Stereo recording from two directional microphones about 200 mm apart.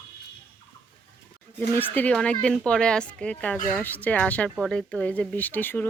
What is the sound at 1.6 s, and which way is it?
Speech, 10° left (ahead or behind).